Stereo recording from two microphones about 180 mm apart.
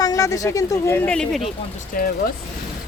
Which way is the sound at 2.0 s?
55° left (ahead or behind).